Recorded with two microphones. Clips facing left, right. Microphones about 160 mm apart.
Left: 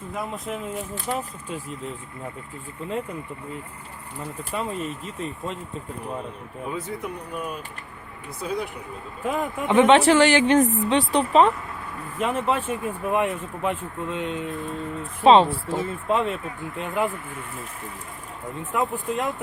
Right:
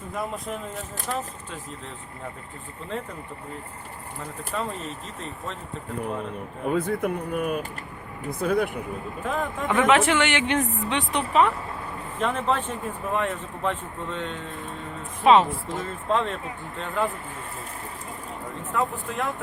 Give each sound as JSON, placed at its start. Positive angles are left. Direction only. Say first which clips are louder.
{"t": 0.4, "sound": "speech", "louder": "left 3 dB", "side_deg": 5}
{"t": 1.1, "sound": "speech", "louder": "left 2 dB", "side_deg": 20}
{"t": 4.5, "sound": "speech", "louder": "left 1 dB", "side_deg": 10}
{"t": 6.7, "sound": "speech", "louder": "right 7 dB", "side_deg": -55}
{"t": 9.2, "sound": "speech", "louder": "left 3 dB", "side_deg": 10}
{"t": 9.6, "sound": "a woman's voice", "louder": "left 5 dB", "side_deg": 25}
{"t": 12.2, "sound": "speech", "louder": "left 1 dB", "side_deg": 10}
{"t": 15.2, "sound": "a woman's voice", "louder": "left 2 dB", "side_deg": 30}
{"t": 15.8, "sound": "speech", "louder": "left 1 dB", "side_deg": 10}
{"t": 18.7, "sound": "speech", "louder": "left 2 dB", "side_deg": 15}